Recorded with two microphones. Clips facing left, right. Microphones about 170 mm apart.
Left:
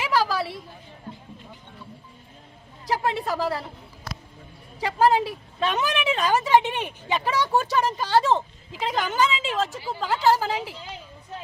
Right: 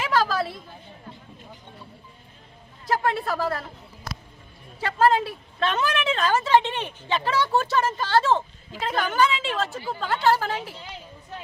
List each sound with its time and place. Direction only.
0.0 s a sound: 10° left (ahead or behind)
2.8 s a woman's voice: 15° left (ahead or behind)
4.8 s a woman's voice: 15° left (ahead or behind)